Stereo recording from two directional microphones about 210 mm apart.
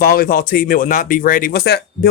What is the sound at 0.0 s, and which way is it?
Speech, 45° left (ahead or behind).